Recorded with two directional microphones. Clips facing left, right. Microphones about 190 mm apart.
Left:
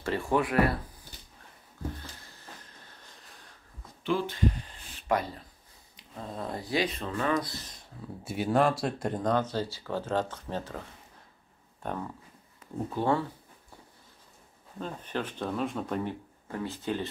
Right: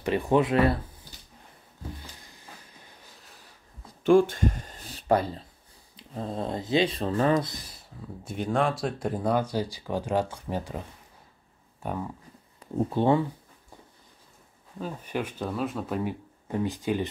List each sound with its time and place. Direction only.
0.0 s speech: 20° right (ahead or behind)
2.7 s train: 5° right (ahead or behind)
4.0 s speech: 50° right (ahead or behind)
7.4 s speech: 15° right (ahead or behind)
8.2 s speech: 5° left (ahead or behind)
12.5 s speech: 25° right (ahead or behind)
14.8 s speech: 10° right (ahead or behind)